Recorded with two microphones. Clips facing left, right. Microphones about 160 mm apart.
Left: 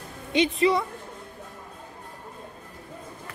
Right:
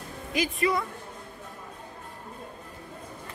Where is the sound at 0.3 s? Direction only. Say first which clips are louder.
Left 5 dB; 25° left (ahead or behind).